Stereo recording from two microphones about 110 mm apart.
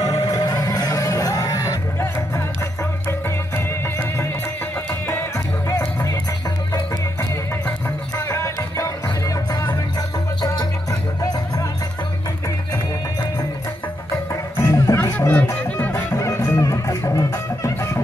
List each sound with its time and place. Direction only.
0.0 s music: 35° left (ahead or behind)
5.7 s music: 25° left (ahead or behind)
8.2 s music: 25° left (ahead or behind)
14.3 s music: 25° left (ahead or behind)
15.1 s music: 15° left (ahead or behind)
15.9 s music: 25° left (ahead or behind)